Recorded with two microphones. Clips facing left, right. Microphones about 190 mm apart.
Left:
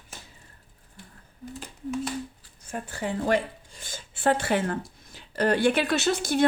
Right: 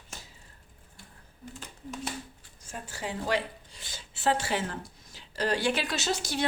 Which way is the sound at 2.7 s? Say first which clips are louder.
Left 6 dB; 55° left (ahead or behind).